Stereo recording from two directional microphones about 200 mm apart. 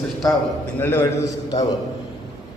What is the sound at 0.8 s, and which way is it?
Speech, 10° left (ahead or behind).